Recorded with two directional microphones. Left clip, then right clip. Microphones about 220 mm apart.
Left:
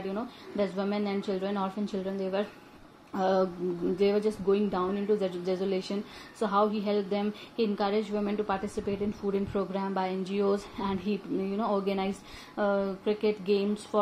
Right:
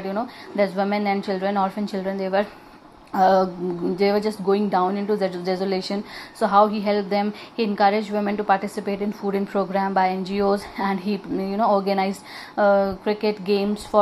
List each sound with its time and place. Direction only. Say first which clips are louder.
0.1 s a woman's voice: right 9 dB; 20° right (ahead or behind)